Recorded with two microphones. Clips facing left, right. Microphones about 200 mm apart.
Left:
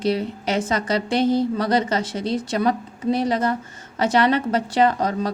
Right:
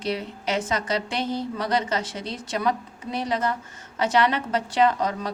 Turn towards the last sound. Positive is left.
turn(degrees=35)  # may be behind; listen again after turning